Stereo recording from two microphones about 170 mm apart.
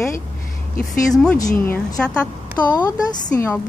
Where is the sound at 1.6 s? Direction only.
10° left (ahead or behind).